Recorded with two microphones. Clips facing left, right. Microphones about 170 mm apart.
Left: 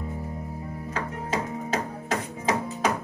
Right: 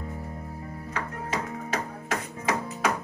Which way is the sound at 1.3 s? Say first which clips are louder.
Left 3 dB; 25° left (ahead or behind).